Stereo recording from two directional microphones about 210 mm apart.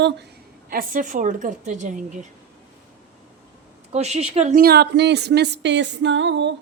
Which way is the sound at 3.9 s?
30° right (ahead or behind).